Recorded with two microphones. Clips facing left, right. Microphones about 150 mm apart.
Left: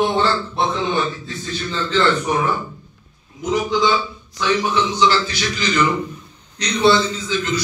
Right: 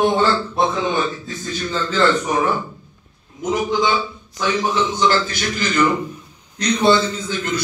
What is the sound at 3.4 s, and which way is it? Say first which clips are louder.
A man's voice: even; 45° right (ahead or behind).